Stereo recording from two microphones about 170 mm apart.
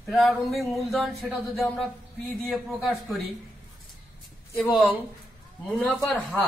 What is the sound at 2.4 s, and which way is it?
Speech, centre (ahead or behind).